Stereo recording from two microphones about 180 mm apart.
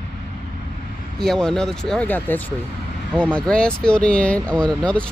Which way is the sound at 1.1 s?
Centre (ahead or behind).